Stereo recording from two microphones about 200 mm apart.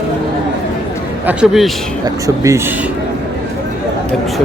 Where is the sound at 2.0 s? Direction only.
15° right (ahead or behind).